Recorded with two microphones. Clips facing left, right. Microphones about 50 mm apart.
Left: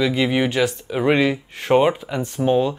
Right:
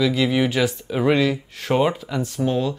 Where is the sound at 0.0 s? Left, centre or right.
Centre.